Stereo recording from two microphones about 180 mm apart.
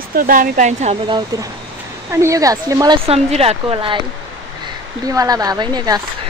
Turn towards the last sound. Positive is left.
turn(degrees=-20)  # may be behind; listen again after turning